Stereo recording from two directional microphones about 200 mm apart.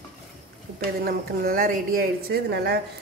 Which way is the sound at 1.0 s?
45° right (ahead or behind).